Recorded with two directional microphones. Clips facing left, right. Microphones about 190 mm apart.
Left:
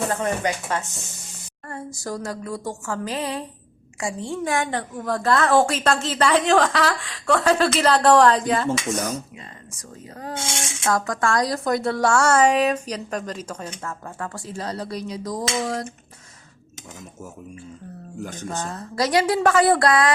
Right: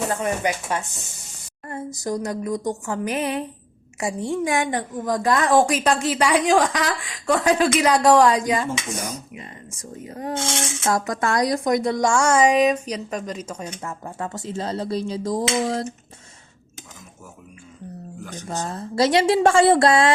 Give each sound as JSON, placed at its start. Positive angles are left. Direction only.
{"t": 0.1, "sound": "a woman's voice", "side_deg": -15}
{"t": 10.0, "sound": "a woman's voice", "side_deg": -20}
{"t": 14.2, "sound": "a woman's voice", "side_deg": -20}
{"t": 18.2, "sound": "speech", "side_deg": 45}
{"t": 18.4, "sound": "a woman's voice", "side_deg": -25}